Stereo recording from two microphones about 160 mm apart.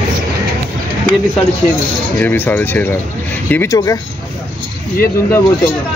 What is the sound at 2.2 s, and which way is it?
Speech, 10° left (ahead or behind).